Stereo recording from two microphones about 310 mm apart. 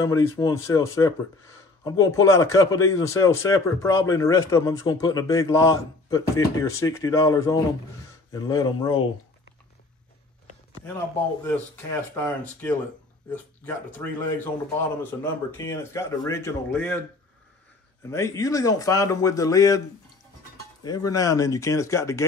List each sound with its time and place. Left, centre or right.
0.0 s speech: centre
11.4 s speech: centre
15.5 s speech: centre
18.1 s speech: centre
20.8 s speech: centre